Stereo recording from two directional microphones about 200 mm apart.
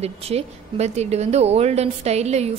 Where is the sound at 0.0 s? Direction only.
30° right (ahead or behind).